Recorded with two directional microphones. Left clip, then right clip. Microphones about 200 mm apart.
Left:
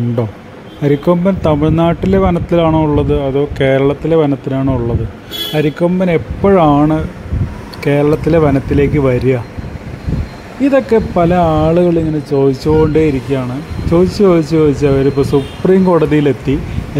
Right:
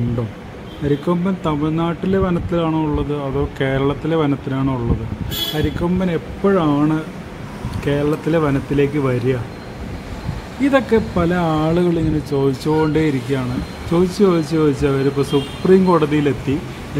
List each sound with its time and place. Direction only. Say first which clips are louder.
0.8 s speech: left 8 dB; 25° left (ahead or behind); by 4.7 s 10° left (ahead or behind)
5.6 s speech: left 12 dB; 25° left (ahead or behind)
10.6 s speech: left 5 dB; 15° left (ahead or behind)